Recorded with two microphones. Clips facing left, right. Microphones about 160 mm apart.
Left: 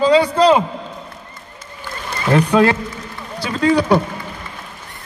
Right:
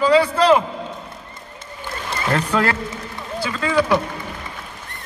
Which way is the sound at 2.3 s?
20° left (ahead or behind).